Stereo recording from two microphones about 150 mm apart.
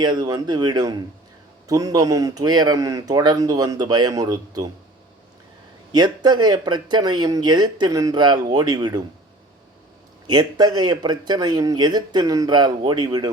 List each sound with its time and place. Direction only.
0.0 s speech: 30° right (ahead or behind)
5.9 s speech: 30° right (ahead or behind)
10.2 s speech: 25° right (ahead or behind)